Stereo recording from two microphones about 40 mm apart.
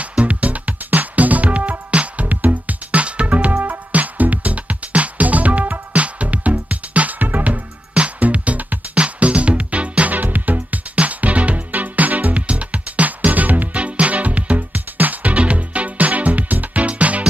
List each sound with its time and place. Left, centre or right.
0.2 s music: right
2.2 s music: right
10.1 s music: right